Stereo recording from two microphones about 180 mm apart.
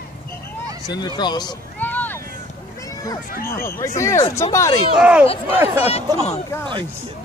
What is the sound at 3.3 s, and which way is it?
Speech, 55° left (ahead or behind).